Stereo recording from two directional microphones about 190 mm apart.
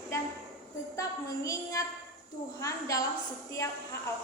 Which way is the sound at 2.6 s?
15° left (ahead or behind).